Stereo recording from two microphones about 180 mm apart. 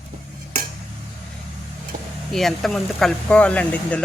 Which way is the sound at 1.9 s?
50° right (ahead or behind).